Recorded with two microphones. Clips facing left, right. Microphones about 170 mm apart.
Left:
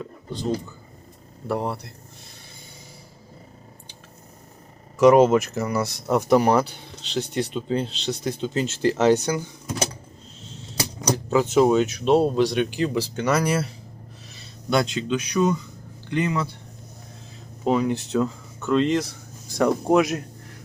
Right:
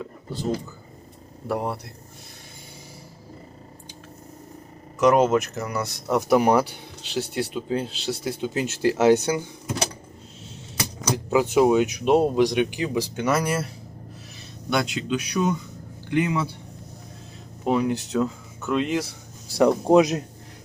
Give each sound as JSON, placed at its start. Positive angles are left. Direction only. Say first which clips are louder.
{"t": 1.5, "sound": "speech", "louder": "left 1 dB", "side_deg": 0}
{"t": 4.9, "sound": "speech", "louder": "left 4 dB", "side_deg": 0}
{"t": 11.1, "sound": "speech", "louder": "left 1 dB", "side_deg": -10}
{"t": 13.3, "sound": "speech", "louder": "left 2 dB", "side_deg": 0}
{"t": 14.7, "sound": "speech", "louder": "left 2 dB", "side_deg": 0}
{"t": 17.7, "sound": "speech", "louder": "left 1 dB", "side_deg": 0}
{"t": 19.5, "sound": "speech", "louder": "right 2 dB", "side_deg": -15}